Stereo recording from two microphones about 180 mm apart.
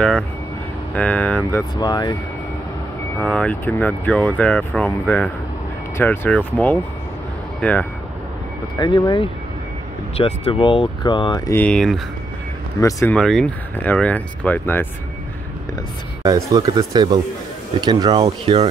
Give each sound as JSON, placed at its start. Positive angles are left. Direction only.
{"t": 0.9, "sound": "speech", "side_deg": 10}
{"t": 1.8, "sound": "speech", "side_deg": 25}
{"t": 3.3, "sound": "speech", "side_deg": 5}
{"t": 8.7, "sound": "speech", "side_deg": 25}
{"t": 16.3, "sound": "speech", "side_deg": -20}